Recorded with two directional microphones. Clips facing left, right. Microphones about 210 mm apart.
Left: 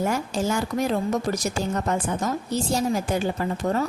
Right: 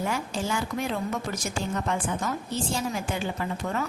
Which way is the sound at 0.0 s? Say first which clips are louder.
Left 5 dB; 40° left (ahead or behind).